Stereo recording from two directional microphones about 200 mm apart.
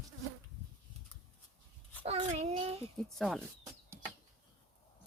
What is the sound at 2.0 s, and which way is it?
Child singing, 30° right (ahead or behind).